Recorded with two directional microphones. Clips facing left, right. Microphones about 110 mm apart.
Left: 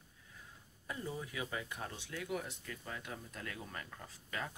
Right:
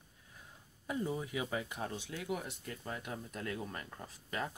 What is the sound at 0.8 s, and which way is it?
Speech, 20° right (ahead or behind).